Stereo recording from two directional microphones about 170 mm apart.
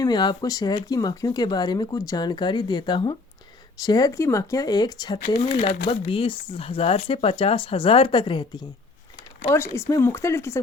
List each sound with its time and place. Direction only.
0.0 s speech: 25° left (ahead or behind)
5.4 s speech: 40° left (ahead or behind)
6.1 s speech: 30° left (ahead or behind)
9.7 s speech: 15° left (ahead or behind)